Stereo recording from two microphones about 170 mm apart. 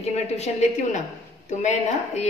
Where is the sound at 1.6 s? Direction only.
45° left (ahead or behind).